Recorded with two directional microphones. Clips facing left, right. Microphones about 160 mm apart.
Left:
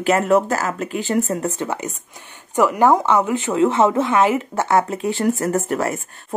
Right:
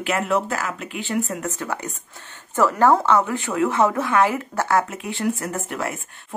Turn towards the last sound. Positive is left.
turn(degrees=40)  # may be behind; listen again after turning